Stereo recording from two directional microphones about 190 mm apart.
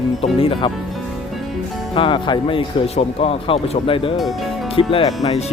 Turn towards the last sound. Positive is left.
turn(degrees=35)  # may be behind; listen again after turning